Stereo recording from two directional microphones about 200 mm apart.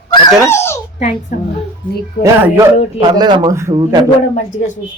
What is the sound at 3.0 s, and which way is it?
A man's voice, 20° right (ahead or behind).